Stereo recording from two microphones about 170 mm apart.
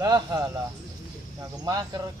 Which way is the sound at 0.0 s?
20° right (ahead or behind).